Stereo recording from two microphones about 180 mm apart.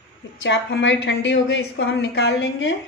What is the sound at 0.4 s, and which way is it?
A woman's voice, 80° left.